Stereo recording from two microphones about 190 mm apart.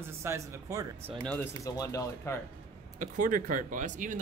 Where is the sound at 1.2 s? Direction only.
10° left (ahead or behind).